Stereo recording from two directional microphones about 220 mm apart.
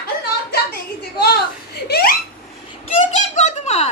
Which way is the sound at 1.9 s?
45° left (ahead or behind).